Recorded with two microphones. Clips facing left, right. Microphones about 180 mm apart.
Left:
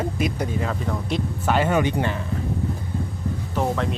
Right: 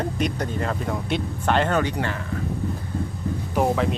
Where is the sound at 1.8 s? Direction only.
20° left (ahead or behind).